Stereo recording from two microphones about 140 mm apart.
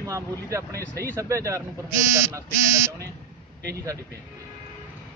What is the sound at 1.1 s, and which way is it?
Speech, 20° right (ahead or behind).